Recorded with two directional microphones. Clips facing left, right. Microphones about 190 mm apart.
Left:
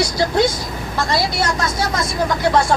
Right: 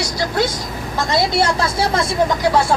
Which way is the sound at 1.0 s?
20° right (ahead or behind).